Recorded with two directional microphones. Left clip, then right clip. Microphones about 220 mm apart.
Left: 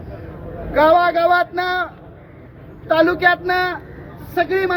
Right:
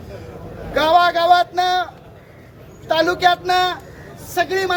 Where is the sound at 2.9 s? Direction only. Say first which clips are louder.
Left 1 dB; centre (ahead or behind).